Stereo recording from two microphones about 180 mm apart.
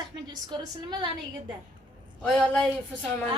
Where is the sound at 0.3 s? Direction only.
25° right (ahead or behind).